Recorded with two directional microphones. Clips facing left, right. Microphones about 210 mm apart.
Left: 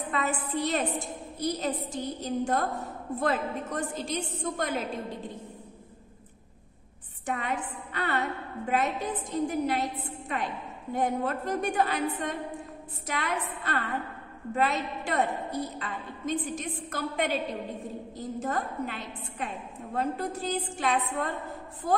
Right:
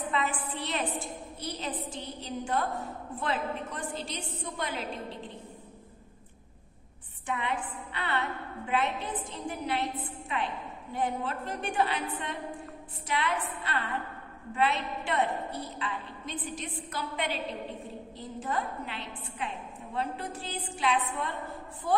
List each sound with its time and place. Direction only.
0.1 s a woman's voice: 45° left (ahead or behind)
7.2 s a woman's voice: 45° left (ahead or behind)